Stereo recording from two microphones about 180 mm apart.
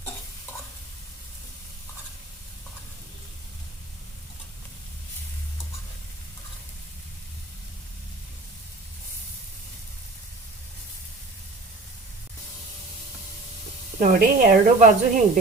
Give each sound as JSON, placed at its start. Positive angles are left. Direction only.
{"t": 14.0, "sound": "a woman's voice", "side_deg": -50}